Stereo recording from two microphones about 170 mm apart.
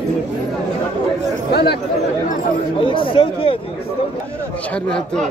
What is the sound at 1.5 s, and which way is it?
Speech, 70° left (ahead or behind).